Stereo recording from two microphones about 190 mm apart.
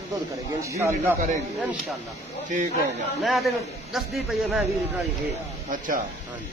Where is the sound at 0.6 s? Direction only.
15° right (ahead or behind).